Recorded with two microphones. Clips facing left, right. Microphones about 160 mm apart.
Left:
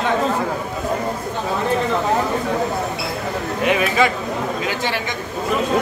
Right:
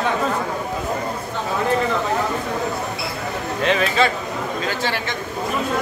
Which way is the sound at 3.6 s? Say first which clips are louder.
Left 1 dB; 15° left (ahead or behind).